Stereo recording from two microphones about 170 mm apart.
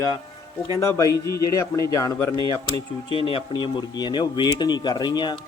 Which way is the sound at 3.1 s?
30° left (ahead or behind).